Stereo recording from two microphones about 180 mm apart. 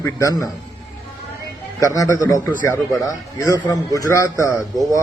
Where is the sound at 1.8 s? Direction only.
20° left (ahead or behind).